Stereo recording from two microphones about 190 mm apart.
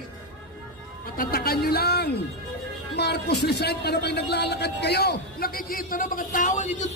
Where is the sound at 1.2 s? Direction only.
50° left (ahead or behind).